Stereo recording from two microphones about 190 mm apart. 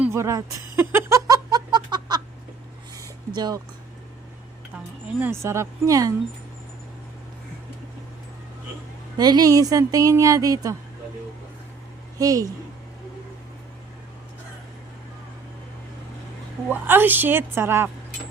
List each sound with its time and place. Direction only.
0.0 s speech: 15° right (ahead or behind)
0.8 s a sound: 15° right (ahead or behind)
5.2 s a woman's voice: 15° right (ahead or behind)
9.1 s speech: 20° right (ahead or behind)
12.2 s a woman's voice: 20° right (ahead or behind)
16.6 s a woman's voice: 10° right (ahead or behind)